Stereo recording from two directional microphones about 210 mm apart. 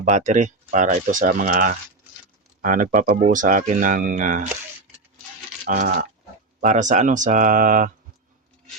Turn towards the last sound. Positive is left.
turn(degrees=-40)  # may be behind; listen again after turning